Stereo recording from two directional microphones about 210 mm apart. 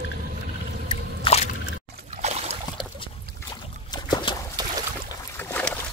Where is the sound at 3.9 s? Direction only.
20° left (ahead or behind).